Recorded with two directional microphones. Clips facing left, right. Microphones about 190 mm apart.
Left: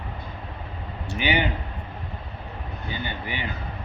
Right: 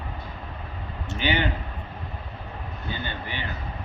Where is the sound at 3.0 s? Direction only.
15° left (ahead or behind).